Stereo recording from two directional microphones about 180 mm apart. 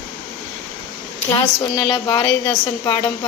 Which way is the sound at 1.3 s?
25° left (ahead or behind).